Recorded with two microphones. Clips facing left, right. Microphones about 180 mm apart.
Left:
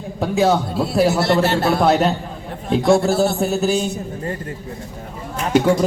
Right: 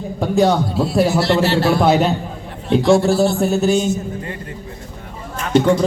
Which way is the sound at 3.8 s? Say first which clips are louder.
Right 3 dB; 35° left (ahead or behind).